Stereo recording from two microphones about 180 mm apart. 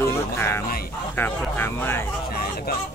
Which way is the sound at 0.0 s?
15° left (ahead or behind).